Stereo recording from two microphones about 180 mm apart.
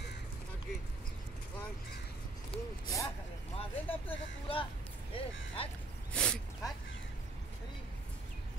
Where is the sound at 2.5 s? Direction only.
30° left (ahead or behind).